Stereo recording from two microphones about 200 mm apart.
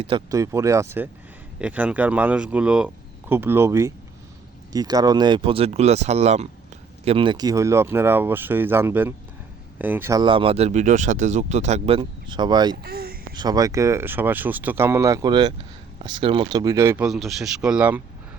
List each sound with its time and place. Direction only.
0.0 s speech: 20° right (ahead or behind)
12.7 s speech: 50° right (ahead or behind)
13.3 s speech: 20° right (ahead or behind)
17.1 s speech: centre (ahead or behind)